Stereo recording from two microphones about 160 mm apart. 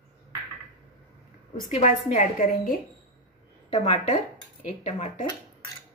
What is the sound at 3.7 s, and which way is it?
A woman's voice, 40° left (ahead or behind).